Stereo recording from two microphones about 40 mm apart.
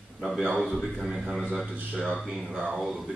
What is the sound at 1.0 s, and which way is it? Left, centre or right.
A man's voice, centre.